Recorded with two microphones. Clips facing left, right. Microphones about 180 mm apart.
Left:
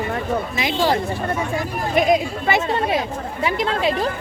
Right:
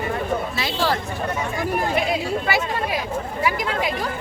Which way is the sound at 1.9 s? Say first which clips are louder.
Left 4 dB; 20° left (ahead or behind).